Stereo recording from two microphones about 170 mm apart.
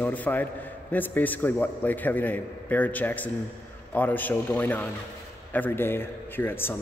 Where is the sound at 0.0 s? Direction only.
10° left (ahead or behind).